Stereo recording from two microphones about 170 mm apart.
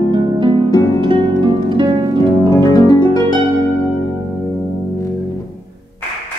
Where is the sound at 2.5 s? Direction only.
20° left (ahead or behind).